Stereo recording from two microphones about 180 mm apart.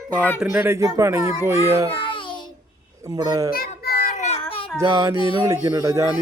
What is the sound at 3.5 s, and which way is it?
Child singing, 55° left (ahead or behind).